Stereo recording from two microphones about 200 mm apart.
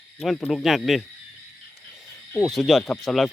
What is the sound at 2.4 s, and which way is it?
Speech, centre (ahead or behind).